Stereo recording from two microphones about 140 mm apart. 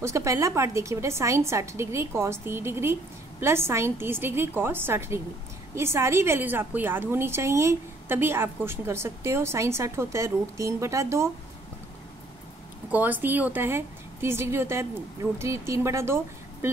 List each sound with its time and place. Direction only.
0.0 s a woman's voice: 20° right (ahead or behind)
12.9 s a woman's voice: 15° right (ahead or behind)